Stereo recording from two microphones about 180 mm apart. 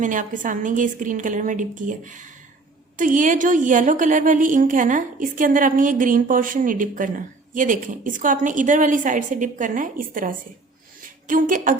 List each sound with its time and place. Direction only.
0.0 s a woman's voice: 45° right (ahead or behind)